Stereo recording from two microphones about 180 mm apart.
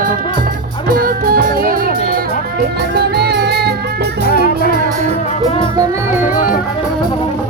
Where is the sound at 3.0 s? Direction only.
65° right (ahead or behind).